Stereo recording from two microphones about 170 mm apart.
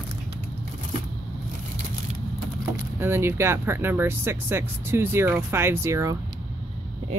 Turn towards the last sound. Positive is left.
turn(degrees=-15)  # may be behind; listen again after turning